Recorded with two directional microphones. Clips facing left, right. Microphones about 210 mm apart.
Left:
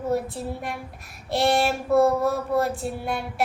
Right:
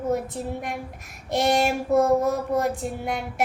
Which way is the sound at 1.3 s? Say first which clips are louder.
Even; 20° right (ahead or behind).